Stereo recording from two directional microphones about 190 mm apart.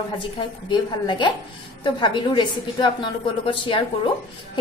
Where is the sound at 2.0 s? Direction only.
25° left (ahead or behind).